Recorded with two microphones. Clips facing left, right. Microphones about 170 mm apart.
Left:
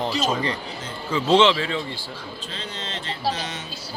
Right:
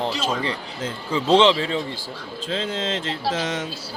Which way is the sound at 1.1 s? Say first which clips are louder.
Right 1 dB; 35° right (ahead or behind).